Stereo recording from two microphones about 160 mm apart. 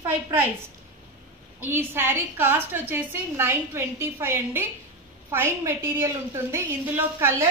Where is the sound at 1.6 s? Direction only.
15° right (ahead or behind).